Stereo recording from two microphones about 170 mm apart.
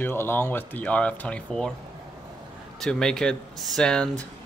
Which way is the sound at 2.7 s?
5° left (ahead or behind).